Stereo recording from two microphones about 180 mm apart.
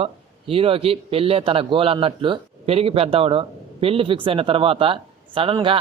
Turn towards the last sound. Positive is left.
turn(degrees=-30)  # may be behind; listen again after turning